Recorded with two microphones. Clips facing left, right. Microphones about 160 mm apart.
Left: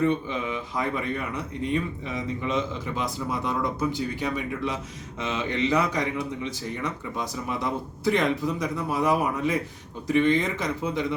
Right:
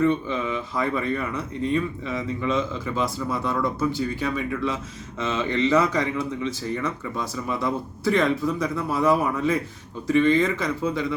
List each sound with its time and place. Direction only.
0.3 s speech: 15° left (ahead or behind)